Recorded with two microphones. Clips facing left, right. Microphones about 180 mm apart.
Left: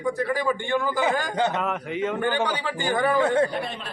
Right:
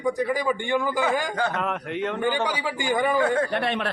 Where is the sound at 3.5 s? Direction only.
70° right (ahead or behind).